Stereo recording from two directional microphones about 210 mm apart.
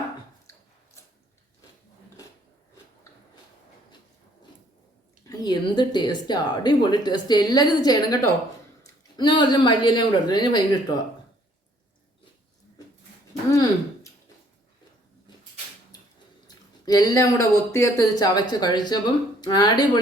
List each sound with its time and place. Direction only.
5.3 s speech: 20° left (ahead or behind)
13.5 s a sound: 15° left (ahead or behind)
16.8 s speech: 15° left (ahead or behind)